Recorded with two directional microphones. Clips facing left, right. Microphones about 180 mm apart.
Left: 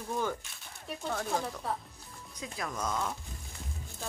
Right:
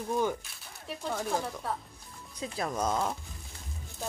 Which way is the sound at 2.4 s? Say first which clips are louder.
Right 5 dB; 35° right (ahead or behind).